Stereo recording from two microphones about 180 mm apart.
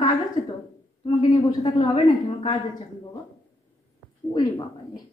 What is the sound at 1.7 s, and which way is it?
Speech, 25° left (ahead or behind).